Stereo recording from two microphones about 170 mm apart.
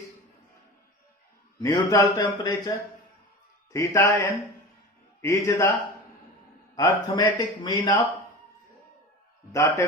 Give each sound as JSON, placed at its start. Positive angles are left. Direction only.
{"t": 1.6, "sound": "a man's voice", "side_deg": 20}
{"t": 6.7, "sound": "speech", "side_deg": 20}
{"t": 9.5, "sound": "a man's voice", "side_deg": 15}